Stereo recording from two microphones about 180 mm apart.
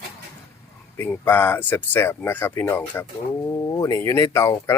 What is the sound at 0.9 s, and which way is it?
Speech, 10° left (ahead or behind).